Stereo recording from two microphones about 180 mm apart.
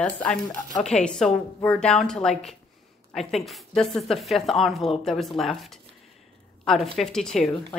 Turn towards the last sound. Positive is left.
turn(degrees=0)  # may be behind; listen again after turning